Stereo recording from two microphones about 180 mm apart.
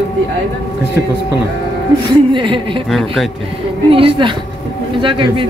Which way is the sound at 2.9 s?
Centre (ahead or behind).